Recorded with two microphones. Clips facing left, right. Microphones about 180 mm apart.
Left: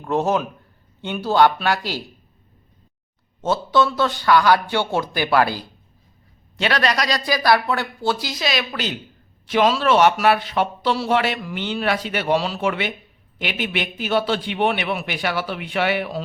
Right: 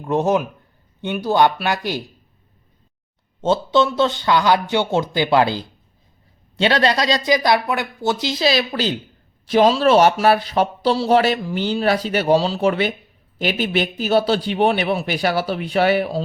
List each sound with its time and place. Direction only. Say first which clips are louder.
0.0 s speech: right 2 dB; 15° right (ahead or behind)
3.4 s speech: right 2 dB; 25° right (ahead or behind)